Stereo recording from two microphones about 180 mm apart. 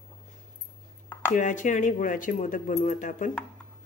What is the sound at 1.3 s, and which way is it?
Speech, 45° left (ahead or behind).